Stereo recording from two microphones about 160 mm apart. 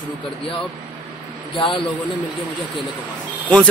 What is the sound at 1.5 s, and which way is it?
Speech, 30° left (ahead or behind).